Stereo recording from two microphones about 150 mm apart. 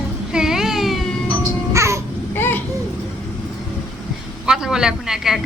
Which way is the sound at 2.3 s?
15° left (ahead or behind).